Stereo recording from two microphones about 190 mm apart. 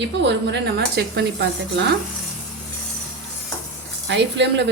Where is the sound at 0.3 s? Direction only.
65° right (ahead or behind).